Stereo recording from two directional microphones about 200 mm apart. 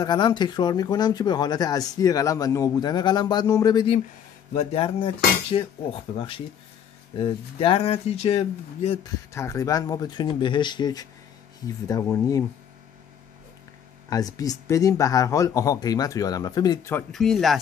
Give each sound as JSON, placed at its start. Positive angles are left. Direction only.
{"t": 0.0, "sound": "speech", "side_deg": 20}
{"t": 9.3, "sound": "speech", "side_deg": 15}
{"t": 14.0, "sound": "speech", "side_deg": 15}
{"t": 17.1, "sound": "speech", "side_deg": 0}